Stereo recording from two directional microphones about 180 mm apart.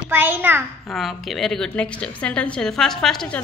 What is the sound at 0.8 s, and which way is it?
A woman's voice, centre (ahead or behind).